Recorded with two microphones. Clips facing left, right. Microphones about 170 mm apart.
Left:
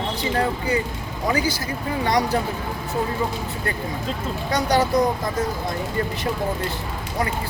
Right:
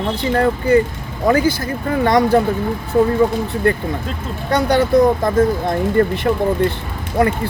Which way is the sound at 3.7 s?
60° right (ahead or behind).